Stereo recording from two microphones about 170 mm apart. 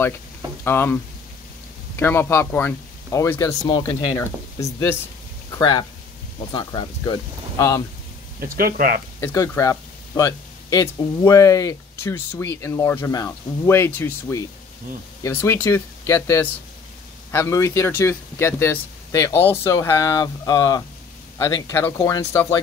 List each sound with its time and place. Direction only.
0.7 s speech: 15° left (ahead or behind)
2.0 s speech: 15° left (ahead or behind)
8.4 s speech: 60° right (ahead or behind)
9.2 s speech: 15° left (ahead or behind)